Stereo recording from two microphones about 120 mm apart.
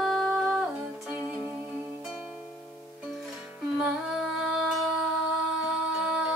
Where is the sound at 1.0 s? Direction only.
15° right (ahead or behind).